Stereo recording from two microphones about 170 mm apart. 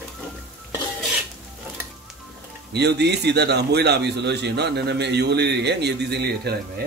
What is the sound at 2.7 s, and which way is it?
A man's voice, 75° right (ahead or behind).